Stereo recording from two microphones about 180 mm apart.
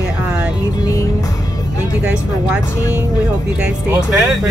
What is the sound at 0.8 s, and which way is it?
Music, 15° left (ahead or behind).